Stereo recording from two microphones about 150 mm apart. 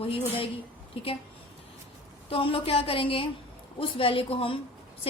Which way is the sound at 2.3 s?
40° left (ahead or behind).